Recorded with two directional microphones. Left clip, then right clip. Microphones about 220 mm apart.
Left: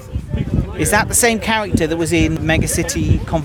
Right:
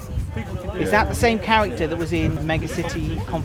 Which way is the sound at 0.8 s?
50° left (ahead or behind).